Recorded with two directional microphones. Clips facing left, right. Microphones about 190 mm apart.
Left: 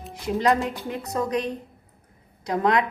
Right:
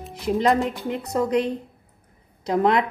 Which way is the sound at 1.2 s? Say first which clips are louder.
Right 4 dB; 25° right (ahead or behind).